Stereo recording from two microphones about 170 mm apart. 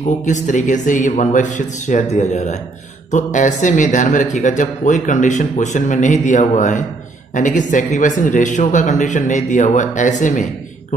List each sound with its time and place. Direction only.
0.0 s speech: 45° left (ahead or behind)